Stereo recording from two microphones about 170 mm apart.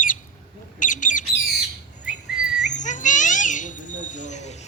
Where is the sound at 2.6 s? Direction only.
45° left (ahead or behind).